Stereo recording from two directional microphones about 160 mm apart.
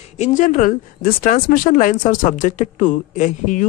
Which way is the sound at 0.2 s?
50° left (ahead or behind).